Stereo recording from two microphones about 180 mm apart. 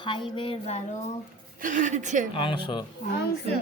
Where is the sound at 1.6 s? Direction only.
45° right (ahead or behind).